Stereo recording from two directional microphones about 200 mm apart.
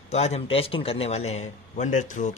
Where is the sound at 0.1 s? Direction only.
30° left (ahead or behind).